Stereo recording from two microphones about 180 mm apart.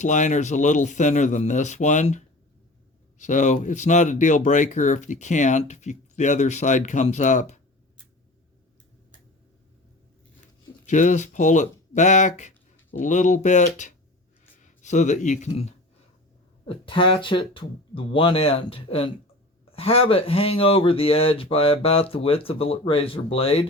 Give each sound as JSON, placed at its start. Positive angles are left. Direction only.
{"t": 0.0, "sound": "speech", "side_deg": 45}
{"t": 10.8, "sound": "speech", "side_deg": 40}